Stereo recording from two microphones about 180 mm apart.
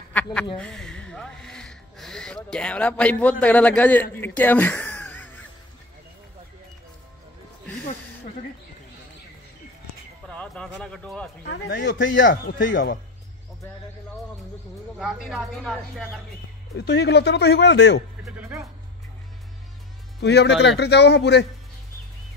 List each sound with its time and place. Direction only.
0.1 s a woman's voice: 5° left (ahead or behind)
4.4 s a sound: 10° left (ahead or behind)
10.3 s speech: 5° left (ahead or behind)
11.4 s speech: 75° left (ahead or behind)
12.3 s speech: 55° left (ahead or behind); by 13.0 s 70° left (ahead or behind)
15.0 s speech: 5° right (ahead or behind)
16.7 s speech: 65° left (ahead or behind)
18.2 s speech: 15° right (ahead or behind)
20.2 s speech: 70° left (ahead or behind)